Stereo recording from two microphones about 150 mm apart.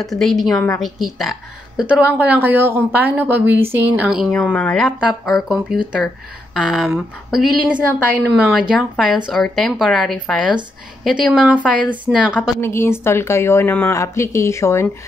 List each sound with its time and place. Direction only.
0.0 s a woman's voice: centre (ahead or behind)
4.3 s a woman's voice: 5° left (ahead or behind)
12.5 s speech: 15° left (ahead or behind)